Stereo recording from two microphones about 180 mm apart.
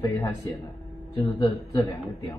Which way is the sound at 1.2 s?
20° left (ahead or behind).